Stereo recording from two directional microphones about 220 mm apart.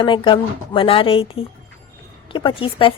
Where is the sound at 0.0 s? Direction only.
20° left (ahead or behind).